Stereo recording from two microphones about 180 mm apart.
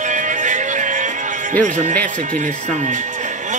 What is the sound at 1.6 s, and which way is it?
Speech, 45° right (ahead or behind).